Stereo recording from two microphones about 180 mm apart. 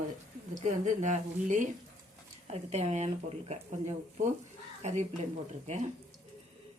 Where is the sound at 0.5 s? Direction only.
40° right (ahead or behind).